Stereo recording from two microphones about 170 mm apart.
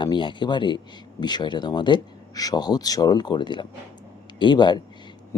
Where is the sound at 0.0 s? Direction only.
30° left (ahead or behind).